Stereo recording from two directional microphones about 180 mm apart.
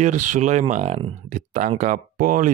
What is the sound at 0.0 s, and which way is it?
Speech, 40° right (ahead or behind).